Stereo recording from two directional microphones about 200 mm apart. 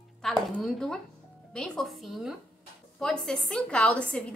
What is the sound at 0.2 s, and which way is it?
A woman's voice, centre (ahead or behind).